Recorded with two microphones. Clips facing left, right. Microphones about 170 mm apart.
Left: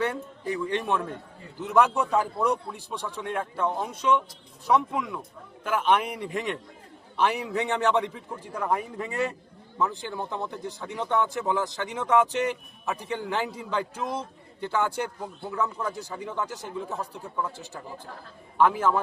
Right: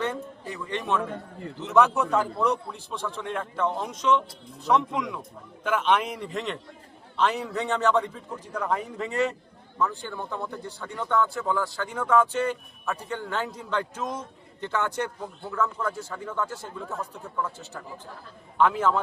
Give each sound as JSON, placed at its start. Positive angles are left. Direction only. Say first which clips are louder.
{"t": 0.7, "sound": "speech", "louder": "right 4 dB", "side_deg": 10}